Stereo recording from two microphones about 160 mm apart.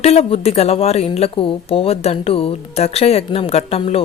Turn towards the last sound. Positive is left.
turn(degrees=40)  # may be behind; listen again after turning